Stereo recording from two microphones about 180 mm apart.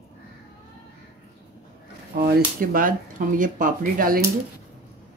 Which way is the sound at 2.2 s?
55° right (ahead or behind).